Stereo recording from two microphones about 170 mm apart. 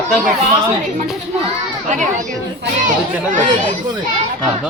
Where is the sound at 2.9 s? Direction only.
50° right (ahead or behind).